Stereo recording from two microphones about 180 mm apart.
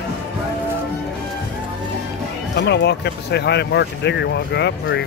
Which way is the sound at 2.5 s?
70° left (ahead or behind).